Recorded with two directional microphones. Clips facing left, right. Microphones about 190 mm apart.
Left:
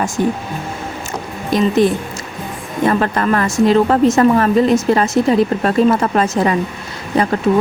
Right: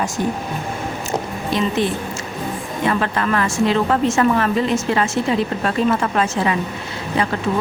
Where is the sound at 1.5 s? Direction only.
40° left (ahead or behind).